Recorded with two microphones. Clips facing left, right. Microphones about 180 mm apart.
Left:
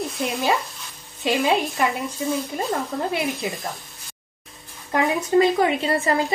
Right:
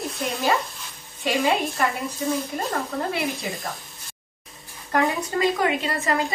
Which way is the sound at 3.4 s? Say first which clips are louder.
Left 3 dB; centre (ahead or behind).